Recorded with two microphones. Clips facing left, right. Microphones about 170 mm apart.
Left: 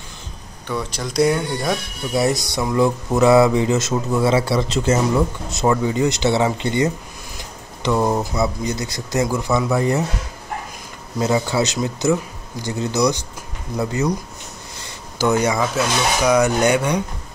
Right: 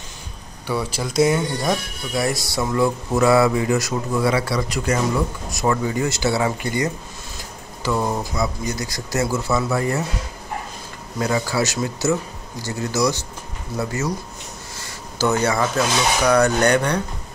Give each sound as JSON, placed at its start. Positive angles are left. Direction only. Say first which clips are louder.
{"t": 0.7, "sound": "speech", "louder": "right 1 dB", "side_deg": -5}
{"t": 2.1, "sound": "speech", "louder": "left 3 dB", "side_deg": 20}
{"t": 11.1, "sound": "speech", "louder": "left 2 dB", "side_deg": 20}
{"t": 14.8, "sound": "speech", "louder": "even", "side_deg": 15}